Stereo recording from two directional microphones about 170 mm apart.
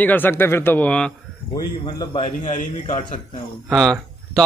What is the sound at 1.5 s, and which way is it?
Speech, 25° left (ahead or behind).